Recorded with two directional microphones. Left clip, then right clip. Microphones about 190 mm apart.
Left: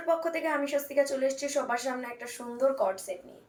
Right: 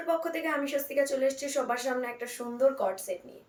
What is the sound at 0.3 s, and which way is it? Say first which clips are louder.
A woman's voice: left 1 dB; 25° right (ahead or behind).